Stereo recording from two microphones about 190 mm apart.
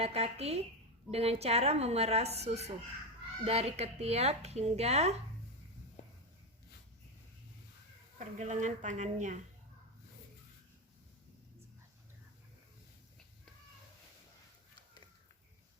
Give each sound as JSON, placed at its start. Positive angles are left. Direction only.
{"t": 0.0, "sound": "speech", "side_deg": -35}
{"t": 8.4, "sound": "speech", "side_deg": -40}